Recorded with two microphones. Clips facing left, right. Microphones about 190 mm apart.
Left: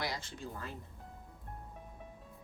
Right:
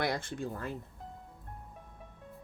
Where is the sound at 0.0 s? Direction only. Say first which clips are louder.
Right 7 dB; 55° right (ahead or behind).